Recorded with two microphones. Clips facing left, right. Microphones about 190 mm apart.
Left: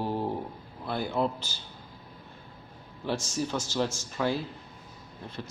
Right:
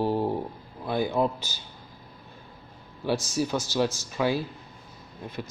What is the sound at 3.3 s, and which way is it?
Speech, 15° right (ahead or behind).